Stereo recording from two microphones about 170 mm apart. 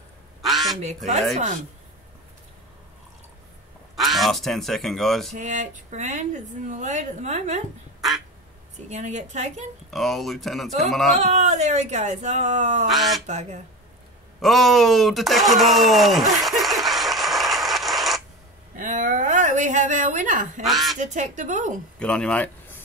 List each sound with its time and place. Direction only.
0.4 s quack: centre (ahead or behind)
3.9 s speech: centre (ahead or behind)
5.4 s a woman's voice: 45° right (ahead or behind)
8.7 s a woman's voice: 40° right (ahead or behind)
9.8 s speech: centre (ahead or behind)
11.3 s a woman's voice: 45° right (ahead or behind)
12.9 s speech: centre (ahead or behind)
13.3 s a woman's voice: 45° right (ahead or behind)
14.4 s a sound: centre (ahead or behind)
18.8 s a sound: 50° right (ahead or behind)
20.6 s speech: centre (ahead or behind)
21.0 s a woman's voice: 45° right (ahead or behind)
22.0 s speech: 5° left (ahead or behind)